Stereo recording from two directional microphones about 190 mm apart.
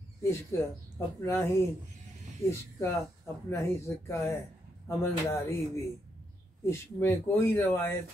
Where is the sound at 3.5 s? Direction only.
15° left (ahead or behind).